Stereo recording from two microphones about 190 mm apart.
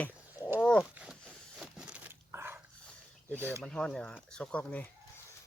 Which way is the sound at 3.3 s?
15° right (ahead or behind).